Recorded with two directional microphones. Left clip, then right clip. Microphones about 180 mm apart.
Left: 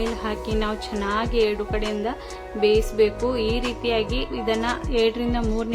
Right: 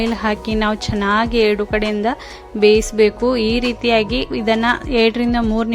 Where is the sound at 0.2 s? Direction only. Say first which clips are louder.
Right 7 dB; 45° right (ahead or behind).